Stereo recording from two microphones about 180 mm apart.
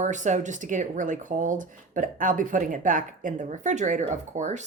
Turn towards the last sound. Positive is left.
turn(degrees=-40)  # may be behind; listen again after turning